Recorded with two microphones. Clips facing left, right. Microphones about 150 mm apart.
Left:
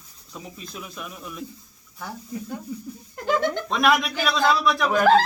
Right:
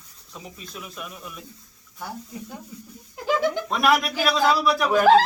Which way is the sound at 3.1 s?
5° right (ahead or behind).